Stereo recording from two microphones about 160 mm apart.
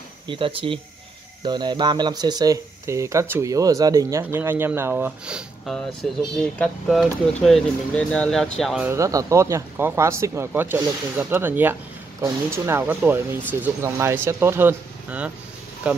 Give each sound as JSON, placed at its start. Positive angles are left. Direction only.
{"t": 0.3, "sound": "speech", "side_deg": -35}
{"t": 8.8, "sound": "speech", "side_deg": -20}